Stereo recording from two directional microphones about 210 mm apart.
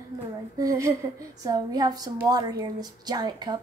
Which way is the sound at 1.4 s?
20° right (ahead or behind).